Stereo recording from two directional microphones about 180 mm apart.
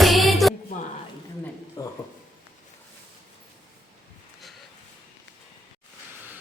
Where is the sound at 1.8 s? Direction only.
20° left (ahead or behind).